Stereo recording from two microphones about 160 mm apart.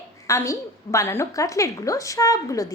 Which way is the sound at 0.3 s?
20° left (ahead or behind).